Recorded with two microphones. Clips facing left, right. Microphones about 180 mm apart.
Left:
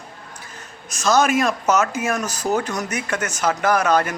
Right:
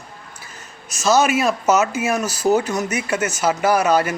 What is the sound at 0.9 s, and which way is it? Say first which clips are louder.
Speech: right 1 dB; 5° right (ahead or behind).